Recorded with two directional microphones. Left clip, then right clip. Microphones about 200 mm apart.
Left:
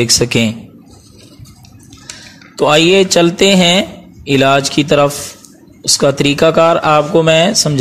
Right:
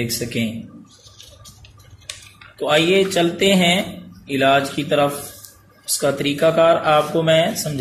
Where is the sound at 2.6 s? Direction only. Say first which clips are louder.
Left 7 dB; 50° left (ahead or behind).